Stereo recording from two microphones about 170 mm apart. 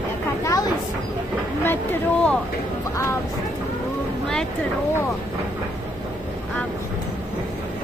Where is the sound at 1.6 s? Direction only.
10° left (ahead or behind).